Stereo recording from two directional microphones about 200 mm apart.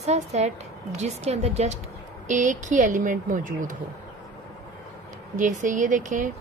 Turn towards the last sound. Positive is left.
turn(degrees=-40)  # may be behind; listen again after turning